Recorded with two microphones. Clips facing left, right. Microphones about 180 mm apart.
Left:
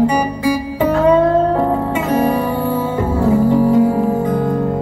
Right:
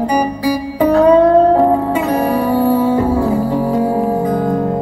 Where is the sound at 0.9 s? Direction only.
35° right (ahead or behind).